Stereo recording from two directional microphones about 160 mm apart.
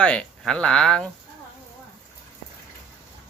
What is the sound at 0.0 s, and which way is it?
Speech, 5° left (ahead or behind).